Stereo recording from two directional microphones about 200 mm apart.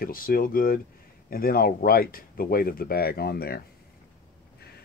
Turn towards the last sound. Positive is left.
turn(degrees=50)  # may be behind; listen again after turning